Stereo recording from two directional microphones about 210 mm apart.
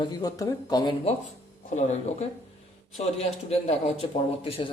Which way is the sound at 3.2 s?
30° left (ahead or behind).